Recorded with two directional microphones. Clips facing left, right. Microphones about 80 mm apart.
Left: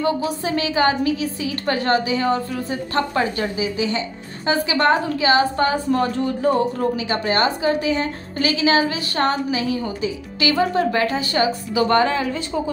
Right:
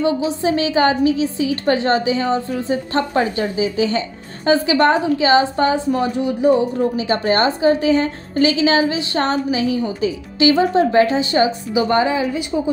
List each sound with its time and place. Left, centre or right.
0.0 s a woman's voice: right
7.0 s a woman's voice: right; by 12.7 s centre